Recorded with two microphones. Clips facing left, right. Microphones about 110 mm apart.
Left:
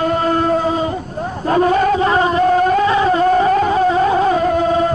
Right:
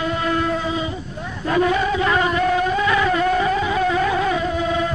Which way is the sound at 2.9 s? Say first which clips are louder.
Left 5 dB; 35° left (ahead or behind).